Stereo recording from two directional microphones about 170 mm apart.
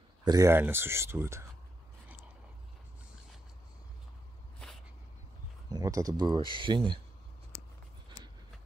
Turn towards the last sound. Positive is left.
turn(degrees=-30)  # may be behind; listen again after turning